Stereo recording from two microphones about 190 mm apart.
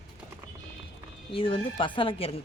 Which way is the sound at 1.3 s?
30° left (ahead or behind).